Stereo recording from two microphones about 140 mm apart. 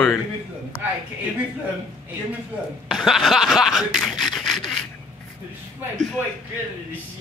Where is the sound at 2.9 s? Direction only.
Centre (ahead or behind).